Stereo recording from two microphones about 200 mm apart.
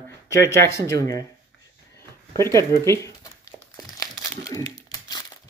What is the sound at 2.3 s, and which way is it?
Crumpling, 15° left (ahead or behind).